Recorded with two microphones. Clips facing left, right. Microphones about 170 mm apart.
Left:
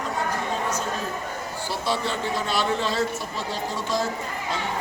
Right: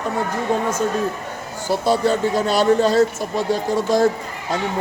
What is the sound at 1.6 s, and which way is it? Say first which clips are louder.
Speech: right 10 dB; 45° right (ahead or behind).